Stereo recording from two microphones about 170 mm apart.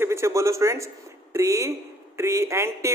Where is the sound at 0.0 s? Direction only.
15° right (ahead or behind).